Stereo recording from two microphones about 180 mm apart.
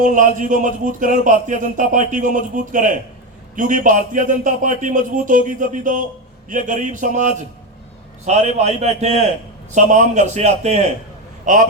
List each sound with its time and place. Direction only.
0.0 s a man's voice: 45° right (ahead or behind)